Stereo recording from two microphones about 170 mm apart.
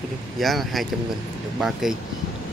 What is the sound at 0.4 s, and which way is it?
Speech, centre (ahead or behind).